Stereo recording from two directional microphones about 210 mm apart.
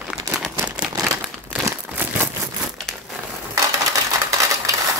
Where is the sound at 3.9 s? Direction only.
15° right (ahead or behind).